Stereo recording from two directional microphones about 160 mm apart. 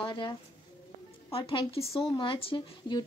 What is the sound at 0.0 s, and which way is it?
Speech, 30° left (ahead or behind).